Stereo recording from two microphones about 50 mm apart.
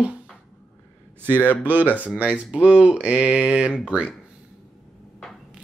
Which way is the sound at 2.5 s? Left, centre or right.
Right.